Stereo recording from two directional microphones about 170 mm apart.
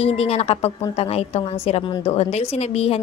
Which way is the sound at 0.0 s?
35° left (ahead or behind).